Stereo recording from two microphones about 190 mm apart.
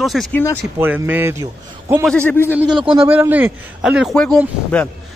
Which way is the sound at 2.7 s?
25° right (ahead or behind).